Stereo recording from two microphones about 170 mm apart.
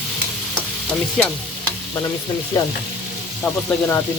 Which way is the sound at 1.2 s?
5° left (ahead or behind).